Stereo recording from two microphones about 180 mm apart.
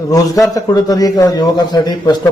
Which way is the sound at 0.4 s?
20° left (ahead or behind).